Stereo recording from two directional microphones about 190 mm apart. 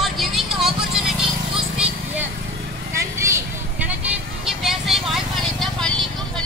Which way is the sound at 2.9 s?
15° right (ahead or behind).